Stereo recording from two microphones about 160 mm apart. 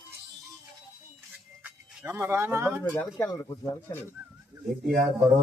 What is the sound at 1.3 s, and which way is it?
Music, 10° right (ahead or behind).